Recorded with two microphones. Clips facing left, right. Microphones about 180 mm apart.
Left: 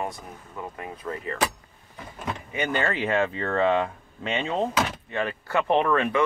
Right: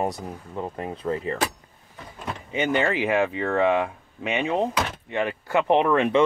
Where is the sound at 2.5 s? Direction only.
20° right (ahead or behind).